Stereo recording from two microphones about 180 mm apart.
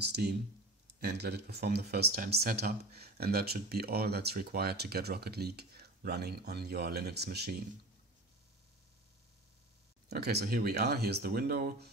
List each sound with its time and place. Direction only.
0.1 s speech: 65° right (ahead or behind)
10.0 s speech: 65° right (ahead or behind)